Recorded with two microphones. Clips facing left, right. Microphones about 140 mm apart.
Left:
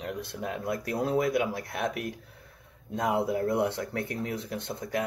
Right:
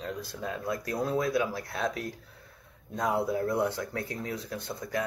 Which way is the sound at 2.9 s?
20° left (ahead or behind).